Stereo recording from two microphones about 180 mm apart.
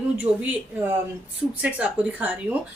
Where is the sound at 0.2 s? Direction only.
10° right (ahead or behind).